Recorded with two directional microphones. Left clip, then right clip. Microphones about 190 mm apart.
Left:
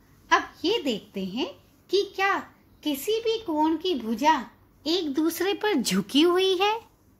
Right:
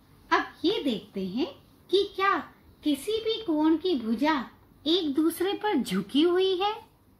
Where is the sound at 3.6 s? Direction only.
40° left (ahead or behind); by 6.7 s 55° left (ahead or behind).